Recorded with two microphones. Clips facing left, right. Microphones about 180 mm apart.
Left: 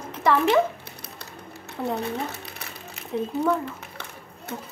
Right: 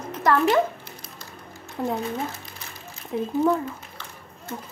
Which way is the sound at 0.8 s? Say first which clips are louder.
Even; 65° left (ahead or behind).